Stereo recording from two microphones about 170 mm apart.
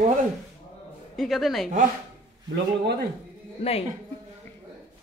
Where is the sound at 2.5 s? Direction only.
75° right (ahead or behind).